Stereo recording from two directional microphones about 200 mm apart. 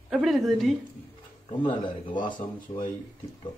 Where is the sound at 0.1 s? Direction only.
Centre (ahead or behind).